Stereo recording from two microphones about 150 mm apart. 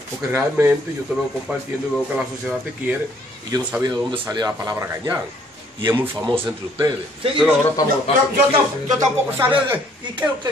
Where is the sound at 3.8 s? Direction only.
25° right (ahead or behind).